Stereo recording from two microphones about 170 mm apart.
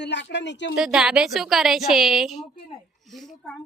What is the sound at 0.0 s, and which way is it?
Speech, 90° left.